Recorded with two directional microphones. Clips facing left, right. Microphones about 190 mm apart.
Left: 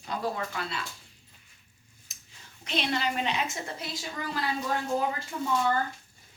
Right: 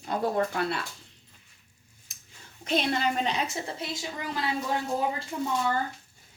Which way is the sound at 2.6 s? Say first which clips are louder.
Right 3 dB; 45° right (ahead or behind).